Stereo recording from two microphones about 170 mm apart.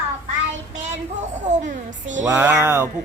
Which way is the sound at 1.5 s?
45° right (ahead or behind).